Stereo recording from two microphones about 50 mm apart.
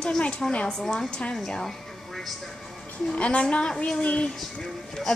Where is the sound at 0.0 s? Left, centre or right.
Centre.